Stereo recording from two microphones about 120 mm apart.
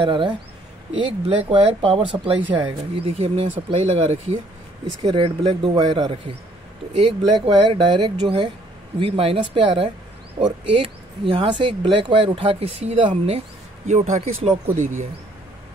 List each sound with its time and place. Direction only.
0.0 s speech: 40° right (ahead or behind)
3.0 s speech: 60° right (ahead or behind)
5.0 s speech: 45° right (ahead or behind); by 13.4 s 60° right (ahead or behind)
13.8 s speech: 75° right (ahead or behind)